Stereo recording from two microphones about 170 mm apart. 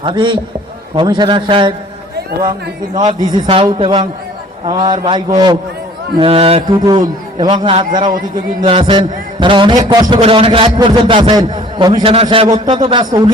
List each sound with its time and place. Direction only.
0.0 s a man's voice: 25° right (ahead or behind)
2.9 s a man's voice: 25° right (ahead or behind)